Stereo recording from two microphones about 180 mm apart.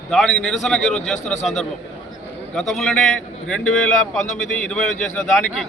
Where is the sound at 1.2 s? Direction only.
40° left (ahead or behind).